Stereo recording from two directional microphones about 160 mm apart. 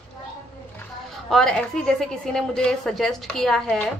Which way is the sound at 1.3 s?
5° left (ahead or behind).